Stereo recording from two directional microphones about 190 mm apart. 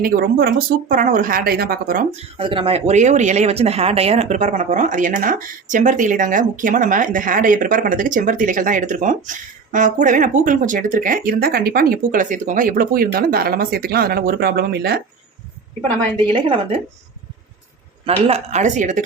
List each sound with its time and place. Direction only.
0.0 s speech: 55° right (ahead or behind)
2.1 s speech: 25° right (ahead or behind); by 15.0 s 60° right (ahead or behind)
16.0 s a woman's voice: 25° right (ahead or behind)
18.0 s speech: 35° right (ahead or behind)